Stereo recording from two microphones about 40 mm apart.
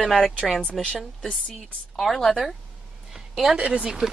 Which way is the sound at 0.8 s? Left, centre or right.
Centre.